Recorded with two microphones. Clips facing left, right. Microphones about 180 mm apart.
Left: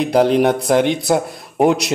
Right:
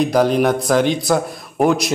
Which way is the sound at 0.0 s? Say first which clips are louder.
Left 1 dB; 25° left (ahead or behind).